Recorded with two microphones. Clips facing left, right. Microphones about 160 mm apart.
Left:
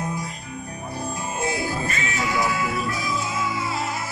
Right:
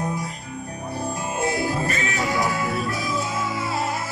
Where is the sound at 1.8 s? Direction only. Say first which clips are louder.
Right 2 dB; 35° right (ahead or behind).